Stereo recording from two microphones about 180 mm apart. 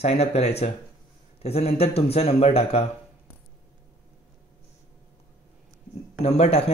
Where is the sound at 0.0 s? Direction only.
35° left (ahead or behind).